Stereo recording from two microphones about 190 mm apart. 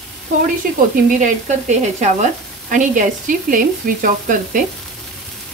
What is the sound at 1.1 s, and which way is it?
Speech, 40° right (ahead or behind).